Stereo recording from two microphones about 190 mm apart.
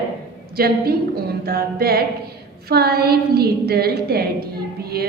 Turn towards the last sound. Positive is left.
turn(degrees=-55)  # may be behind; listen again after turning